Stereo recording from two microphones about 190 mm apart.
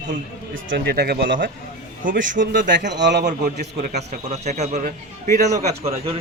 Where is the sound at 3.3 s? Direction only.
50° right (ahead or behind).